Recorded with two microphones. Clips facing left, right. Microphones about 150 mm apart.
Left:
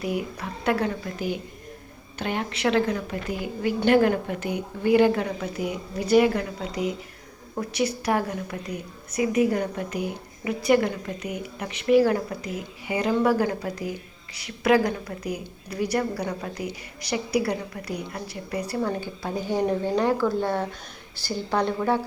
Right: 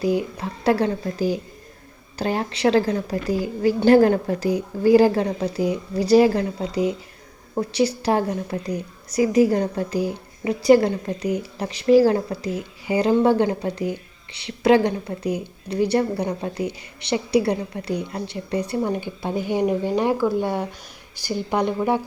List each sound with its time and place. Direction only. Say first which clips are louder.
0.0 s a woman's voice: right 6 dB; 30° right (ahead or behind)